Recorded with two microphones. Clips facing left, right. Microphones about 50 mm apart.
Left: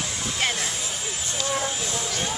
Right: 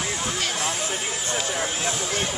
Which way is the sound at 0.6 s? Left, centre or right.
Right.